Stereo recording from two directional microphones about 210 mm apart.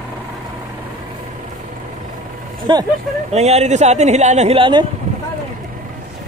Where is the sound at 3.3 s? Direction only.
30° right (ahead or behind).